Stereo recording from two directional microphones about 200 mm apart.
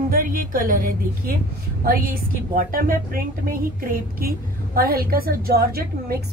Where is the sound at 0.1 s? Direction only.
45° right (ahead or behind).